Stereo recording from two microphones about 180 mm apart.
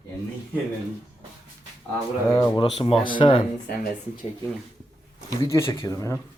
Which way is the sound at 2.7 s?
30° left (ahead or behind).